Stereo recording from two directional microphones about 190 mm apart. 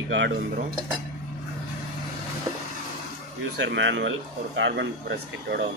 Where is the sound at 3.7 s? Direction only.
70° right (ahead or behind).